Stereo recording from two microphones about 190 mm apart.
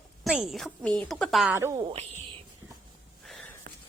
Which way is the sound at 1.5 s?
15° right (ahead or behind).